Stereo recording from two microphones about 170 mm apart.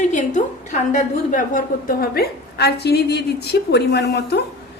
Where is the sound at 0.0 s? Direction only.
45° left (ahead or behind).